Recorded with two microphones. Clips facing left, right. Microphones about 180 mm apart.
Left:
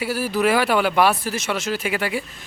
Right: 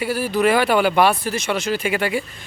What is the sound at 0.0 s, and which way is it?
Speech, 5° left (ahead or behind).